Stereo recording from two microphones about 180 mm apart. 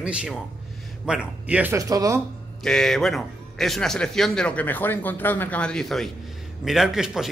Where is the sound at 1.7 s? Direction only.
20° right (ahead or behind).